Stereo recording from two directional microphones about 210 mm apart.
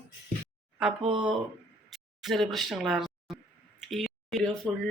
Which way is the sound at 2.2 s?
Centre (ahead or behind).